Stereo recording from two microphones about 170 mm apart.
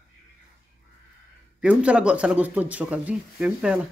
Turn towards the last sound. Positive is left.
turn(degrees=-5)  # may be behind; listen again after turning